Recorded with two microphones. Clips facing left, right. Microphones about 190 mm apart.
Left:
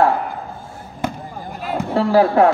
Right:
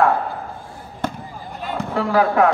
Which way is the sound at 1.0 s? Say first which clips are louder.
Left 1 dB; 10° left (ahead or behind).